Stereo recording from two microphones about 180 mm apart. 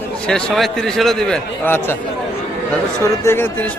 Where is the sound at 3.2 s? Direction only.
15° left (ahead or behind).